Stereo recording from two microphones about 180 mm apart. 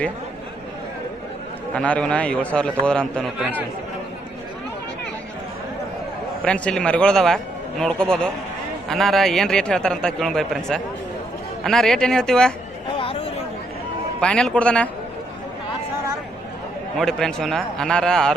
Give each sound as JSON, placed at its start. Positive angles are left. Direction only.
{"t": 1.7, "sound": "a man's voice", "side_deg": 5}
{"t": 6.4, "sound": "a man's voice", "side_deg": 5}
{"t": 13.0, "sound": "chatter", "side_deg": 30}
{"t": 14.2, "sound": "a man's voice", "side_deg": 5}
{"t": 17.0, "sound": "a man's voice", "side_deg": 5}